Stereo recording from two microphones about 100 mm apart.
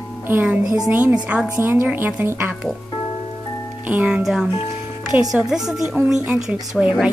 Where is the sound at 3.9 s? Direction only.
15° right (ahead or behind).